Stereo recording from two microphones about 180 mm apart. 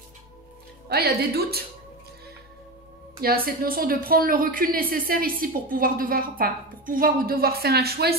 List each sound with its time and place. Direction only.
0.8 s speech: 60° right (ahead or behind)
3.4 s a woman's voice: 55° right (ahead or behind)